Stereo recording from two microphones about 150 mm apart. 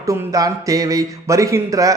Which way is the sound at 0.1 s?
25° right (ahead or behind).